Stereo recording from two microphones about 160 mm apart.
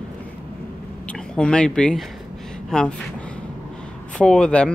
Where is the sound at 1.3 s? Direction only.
5° left (ahead or behind).